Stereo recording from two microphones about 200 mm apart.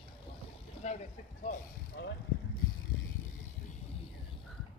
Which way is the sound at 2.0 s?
55° left (ahead or behind).